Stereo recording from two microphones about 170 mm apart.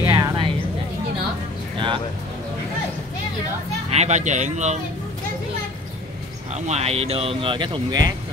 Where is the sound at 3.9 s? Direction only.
40° right (ahead or behind).